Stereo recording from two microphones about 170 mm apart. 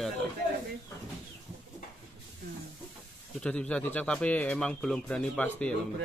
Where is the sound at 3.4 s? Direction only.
5° left (ahead or behind).